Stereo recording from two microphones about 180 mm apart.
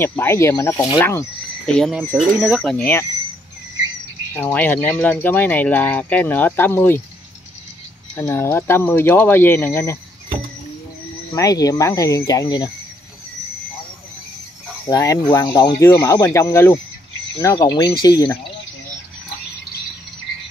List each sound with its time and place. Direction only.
0.0 s speech: 10° left (ahead or behind)
1.7 s speech: 5° left (ahead or behind)
4.3 s speech: 10° left (ahead or behind)
8.2 s speech: 15° left (ahead or behind)
11.3 s speech: 20° left (ahead or behind)
14.9 s speech: 20° left (ahead or behind)